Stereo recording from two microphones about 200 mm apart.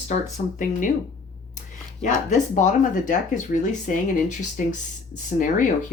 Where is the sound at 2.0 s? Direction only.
40° left (ahead or behind).